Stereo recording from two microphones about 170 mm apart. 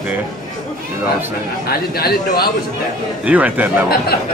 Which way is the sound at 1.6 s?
65° left (ahead or behind).